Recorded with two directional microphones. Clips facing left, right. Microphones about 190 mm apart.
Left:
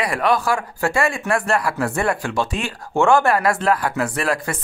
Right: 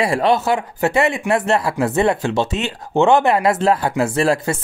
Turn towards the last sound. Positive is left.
turn(degrees=-25)  # may be behind; listen again after turning